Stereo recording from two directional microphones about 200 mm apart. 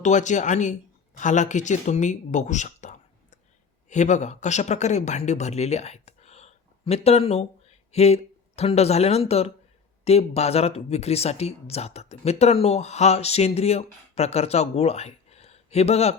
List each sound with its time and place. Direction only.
0.0 s speech: 40° left (ahead or behind)